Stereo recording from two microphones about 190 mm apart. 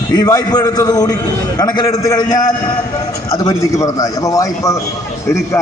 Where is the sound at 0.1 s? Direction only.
20° left (ahead or behind).